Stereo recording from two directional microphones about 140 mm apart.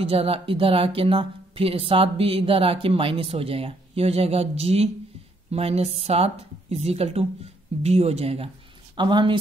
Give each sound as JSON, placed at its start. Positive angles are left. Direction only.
{"t": 0.1, "sound": "speech", "side_deg": -40}
{"t": 8.9, "sound": "a woman's voice", "side_deg": -35}